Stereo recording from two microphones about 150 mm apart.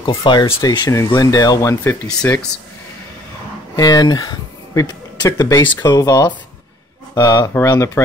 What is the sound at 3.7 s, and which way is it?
Speech, 25° left (ahead or behind).